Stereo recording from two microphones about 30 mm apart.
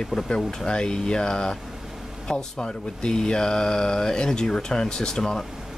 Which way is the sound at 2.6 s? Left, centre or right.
Left.